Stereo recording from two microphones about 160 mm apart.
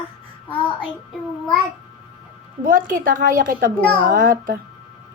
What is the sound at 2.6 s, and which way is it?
A woman's voice, 60° right (ahead or behind).